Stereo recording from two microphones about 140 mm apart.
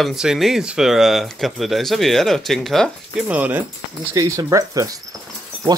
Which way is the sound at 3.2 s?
10° right (ahead or behind).